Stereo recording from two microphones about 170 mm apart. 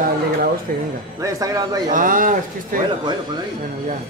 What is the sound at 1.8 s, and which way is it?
Speech, 50° right (ahead or behind).